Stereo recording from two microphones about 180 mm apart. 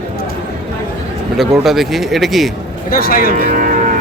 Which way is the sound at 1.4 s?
Centre (ahead or behind).